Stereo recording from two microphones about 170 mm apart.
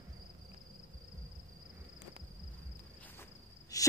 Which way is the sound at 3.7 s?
20° left (ahead or behind).